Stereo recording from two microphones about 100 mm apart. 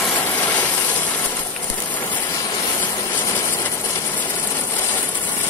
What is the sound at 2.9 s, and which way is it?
Vehicle, 35° left (ahead or behind).